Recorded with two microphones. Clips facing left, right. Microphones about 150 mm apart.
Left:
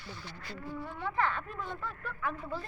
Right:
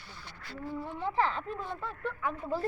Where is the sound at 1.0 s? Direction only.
30° right (ahead or behind).